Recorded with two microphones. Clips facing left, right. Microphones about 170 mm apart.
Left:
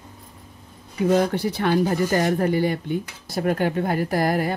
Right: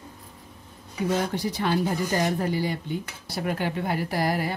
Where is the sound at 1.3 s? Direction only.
60° left (ahead or behind).